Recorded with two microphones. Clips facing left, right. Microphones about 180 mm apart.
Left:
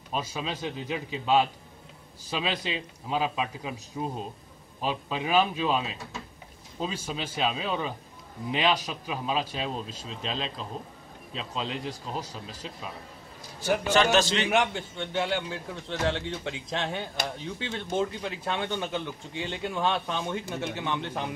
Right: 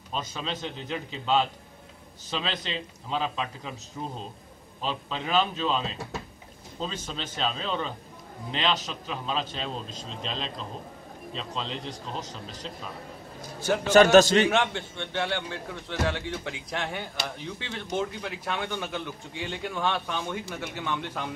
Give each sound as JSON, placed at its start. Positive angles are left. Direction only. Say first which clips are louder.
{"t": 0.1, "sound": "a man's voice", "louder": "left 1 dB", "side_deg": 10}
{"t": 13.9, "sound": "a man's voice", "louder": "right 9 dB", "side_deg": -45}
{"t": 14.5, "sound": "a man's voice", "louder": "even", "side_deg": 15}